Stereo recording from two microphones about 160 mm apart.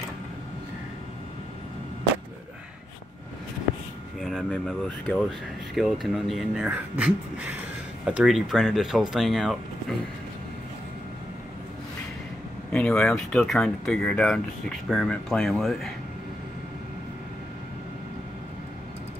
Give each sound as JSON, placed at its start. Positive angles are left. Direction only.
{"t": 4.2, "sound": "speech", "side_deg": 5}
{"t": 12.7, "sound": "speech", "side_deg": 5}